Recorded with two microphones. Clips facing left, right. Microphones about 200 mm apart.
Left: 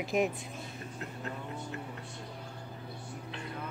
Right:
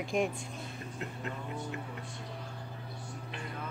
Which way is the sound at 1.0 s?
20° right (ahead or behind).